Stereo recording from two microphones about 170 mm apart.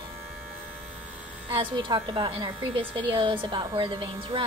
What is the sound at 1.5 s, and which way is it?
Speech, 30° right (ahead or behind).